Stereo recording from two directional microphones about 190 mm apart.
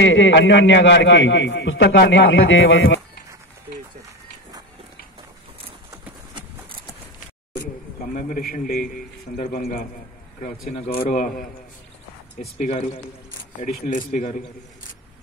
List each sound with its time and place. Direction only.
0.0 s a man's voice: 70° left (ahead or behind); by 3.0 s 90° left
8.1 s a man's voice: 45° left (ahead or behind)
13.6 s speech: 40° left (ahead or behind)